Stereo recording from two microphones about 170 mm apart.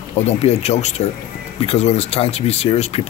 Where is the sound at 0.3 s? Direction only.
40° left (ahead or behind).